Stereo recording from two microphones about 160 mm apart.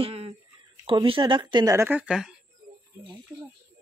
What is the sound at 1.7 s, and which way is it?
Speech, 10° right (ahead or behind).